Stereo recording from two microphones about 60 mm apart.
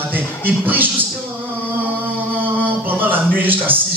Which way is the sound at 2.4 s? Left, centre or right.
Right.